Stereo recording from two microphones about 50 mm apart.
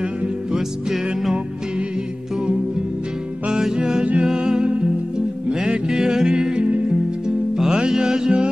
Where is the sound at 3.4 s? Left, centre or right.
Centre.